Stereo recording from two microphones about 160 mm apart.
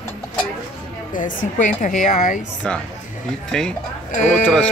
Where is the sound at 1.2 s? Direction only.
55° left (ahead or behind).